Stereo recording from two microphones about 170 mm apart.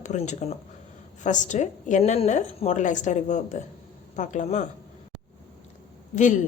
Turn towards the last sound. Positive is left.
turn(degrees=50)  # may be behind; listen again after turning